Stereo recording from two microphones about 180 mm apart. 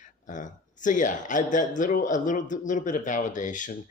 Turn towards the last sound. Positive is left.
turn(degrees=45)  # may be behind; listen again after turning